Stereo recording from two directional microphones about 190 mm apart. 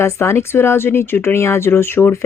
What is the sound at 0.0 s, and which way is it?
Speech, 15° left (ahead or behind).